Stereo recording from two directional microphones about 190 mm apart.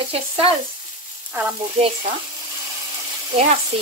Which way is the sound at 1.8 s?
35° right (ahead or behind).